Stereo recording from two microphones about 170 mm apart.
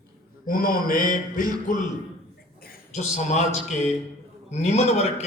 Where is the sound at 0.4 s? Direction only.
55° left (ahead or behind).